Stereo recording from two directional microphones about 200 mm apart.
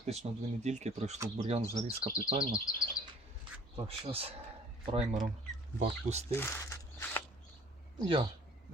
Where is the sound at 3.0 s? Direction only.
45° left (ahead or behind).